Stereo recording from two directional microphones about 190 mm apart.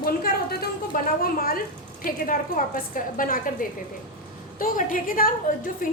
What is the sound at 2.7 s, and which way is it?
A woman's voice, 45° left (ahead or behind).